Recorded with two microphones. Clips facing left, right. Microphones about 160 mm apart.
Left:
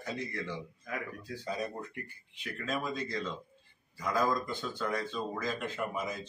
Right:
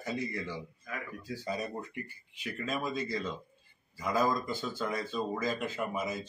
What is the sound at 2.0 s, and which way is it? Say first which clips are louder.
Speech: right 2 dB; 5° right (ahead or behind).